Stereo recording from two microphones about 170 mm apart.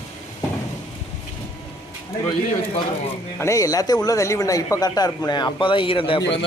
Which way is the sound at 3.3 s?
20° left (ahead or behind).